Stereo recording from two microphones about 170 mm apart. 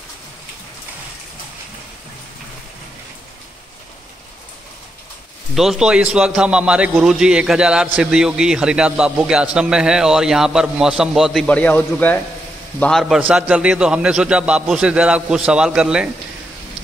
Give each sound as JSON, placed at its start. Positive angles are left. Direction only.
{"t": 5.5, "sound": "a man's voice", "side_deg": 0}